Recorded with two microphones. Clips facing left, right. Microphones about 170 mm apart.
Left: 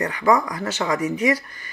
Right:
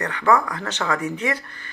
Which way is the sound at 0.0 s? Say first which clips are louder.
Left 1 dB; 10° left (ahead or behind).